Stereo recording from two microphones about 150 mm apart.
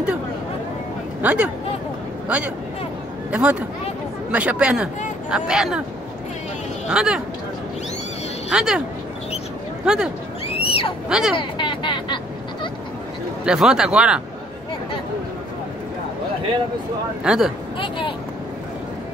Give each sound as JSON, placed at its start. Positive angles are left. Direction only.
{"t": 1.2, "sound": "a man's voice", "side_deg": -10}
{"t": 6.9, "sound": "speech", "side_deg": -5}
{"t": 8.5, "sound": "speech", "side_deg": -5}
{"t": 9.8, "sound": "speech", "side_deg": -5}
{"t": 10.5, "sound": "a sound", "side_deg": 40}
{"t": 11.1, "sound": "speech", "side_deg": -5}
{"t": 11.3, "sound": "vehicle", "side_deg": 35}
{"t": 13.5, "sound": "speech", "side_deg": -5}
{"t": 17.2, "sound": "speech", "side_deg": -5}
{"t": 17.7, "sound": "speech", "side_deg": 35}